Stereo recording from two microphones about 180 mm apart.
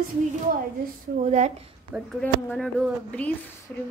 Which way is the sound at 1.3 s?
40° right (ahead or behind).